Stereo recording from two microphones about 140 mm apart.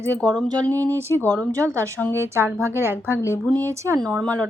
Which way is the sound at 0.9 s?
20° right (ahead or behind).